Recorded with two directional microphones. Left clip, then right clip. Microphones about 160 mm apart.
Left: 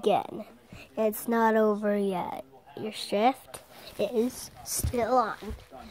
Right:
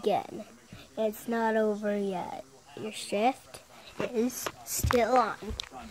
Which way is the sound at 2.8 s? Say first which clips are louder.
Left 3 dB; 10° left (ahead or behind).